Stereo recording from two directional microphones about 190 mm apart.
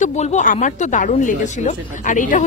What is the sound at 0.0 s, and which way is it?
A woman's voice, 35° left (ahead or behind).